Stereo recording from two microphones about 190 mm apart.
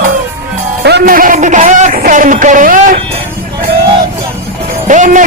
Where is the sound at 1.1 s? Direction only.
45° right (ahead or behind).